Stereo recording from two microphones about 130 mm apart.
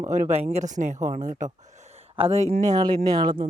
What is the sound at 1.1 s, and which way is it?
Speech, 80° right.